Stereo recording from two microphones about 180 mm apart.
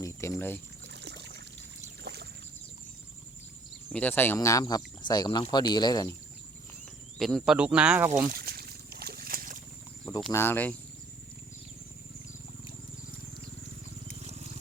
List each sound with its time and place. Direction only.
0.0 s speech: 15° left (ahead or behind)
0.9 s a sound: 70° right (ahead or behind)
3.9 s speech: 10° left (ahead or behind)
7.2 s speech: centre (ahead or behind)
8.3 s a sound: 60° right (ahead or behind)
10.3 s speech: 10° left (ahead or behind)
14.2 s wild animals: 35° right (ahead or behind)